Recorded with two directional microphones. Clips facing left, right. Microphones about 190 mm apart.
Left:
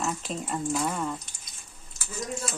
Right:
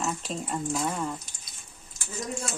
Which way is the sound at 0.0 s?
Centre (ahead or behind).